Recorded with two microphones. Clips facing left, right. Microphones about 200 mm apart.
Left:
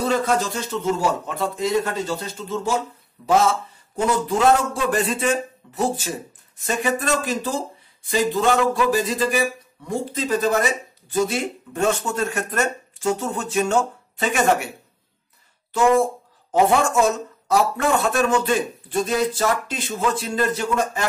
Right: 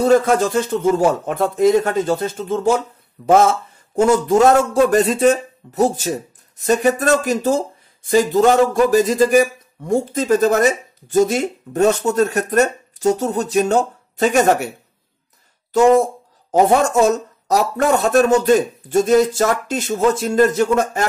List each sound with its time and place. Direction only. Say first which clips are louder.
0.0 s speech: right 7 dB; 50° right (ahead or behind)
15.7 s speech: right 5 dB; 40° right (ahead or behind)